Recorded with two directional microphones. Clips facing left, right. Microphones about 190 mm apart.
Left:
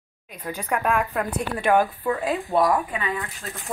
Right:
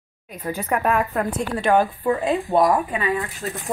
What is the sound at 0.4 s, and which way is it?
Speech, 10° right (ahead or behind).